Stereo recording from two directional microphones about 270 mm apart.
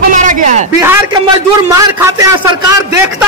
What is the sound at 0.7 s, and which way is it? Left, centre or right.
A man's voice, centre.